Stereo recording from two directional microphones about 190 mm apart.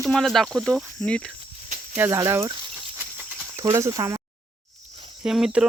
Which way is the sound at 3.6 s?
20° right (ahead or behind).